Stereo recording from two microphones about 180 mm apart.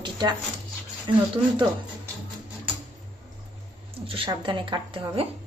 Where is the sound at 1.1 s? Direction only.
30° right (ahead or behind).